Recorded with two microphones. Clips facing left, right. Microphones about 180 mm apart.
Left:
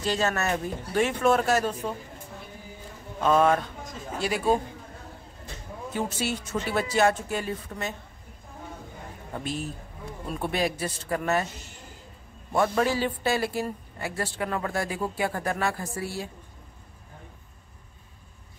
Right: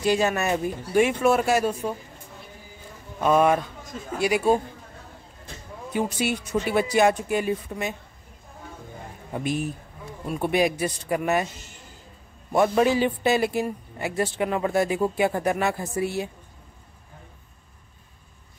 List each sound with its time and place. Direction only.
0.0 s speech: 10° right (ahead or behind)
3.2 s speech: 10° right (ahead or behind)
5.9 s speech: 15° right (ahead or behind)
9.3 s speech: 15° right (ahead or behind)
12.5 s a man's voice: 20° right (ahead or behind)